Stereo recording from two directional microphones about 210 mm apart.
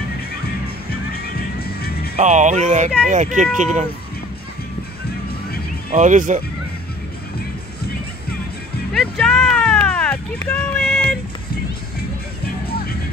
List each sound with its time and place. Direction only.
0.8 s music: 45° left (ahead or behind)
2.1 s speech: 35° right (ahead or behind)
5.9 s speech: 35° right (ahead or behind)
8.9 s speech: centre (ahead or behind)